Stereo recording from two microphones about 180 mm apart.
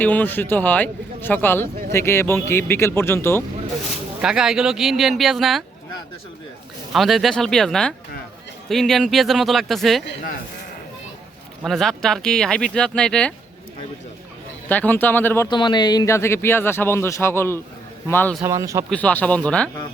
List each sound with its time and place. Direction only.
0.0 s a man's voice: 10° left (ahead or behind)
4.2 s speech: 5° right (ahead or behind)
6.9 s speech: centre (ahead or behind)
11.6 s speech: centre (ahead or behind)
14.7 s a man's voice: 10° left (ahead or behind)
15.4 s a man's voice: 25° left (ahead or behind)
18.4 s speech: 15° right (ahead or behind)
18.9 s a man's voice: 10° left (ahead or behind)